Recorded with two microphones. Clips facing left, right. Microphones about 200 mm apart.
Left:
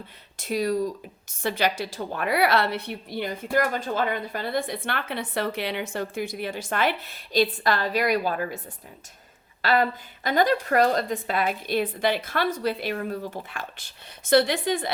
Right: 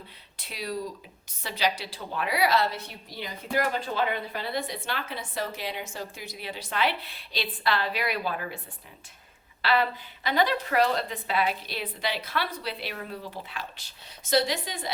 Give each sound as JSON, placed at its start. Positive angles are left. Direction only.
{"t": 0.3, "sound": "a woman's voice", "side_deg": 45}